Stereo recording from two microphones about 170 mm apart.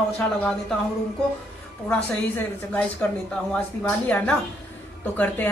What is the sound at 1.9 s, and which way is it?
A woman's voice, 10° left (ahead or behind).